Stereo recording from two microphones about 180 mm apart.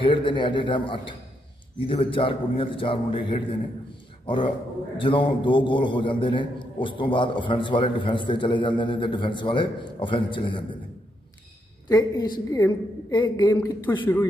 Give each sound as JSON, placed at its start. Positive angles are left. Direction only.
{"t": 0.0, "sound": "a man's voice", "side_deg": 30}
{"t": 4.9, "sound": "a man's voice", "side_deg": 30}
{"t": 11.9, "sound": "a man's voice", "side_deg": 20}
{"t": 13.9, "sound": "speech", "side_deg": 10}